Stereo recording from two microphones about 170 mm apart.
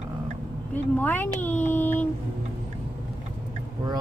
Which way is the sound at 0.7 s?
10° left (ahead or behind).